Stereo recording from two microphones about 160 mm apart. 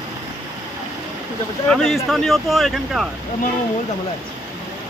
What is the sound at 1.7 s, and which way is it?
Speech, centre (ahead or behind).